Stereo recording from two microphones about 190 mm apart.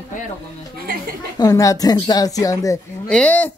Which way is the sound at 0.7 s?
50° right (ahead or behind).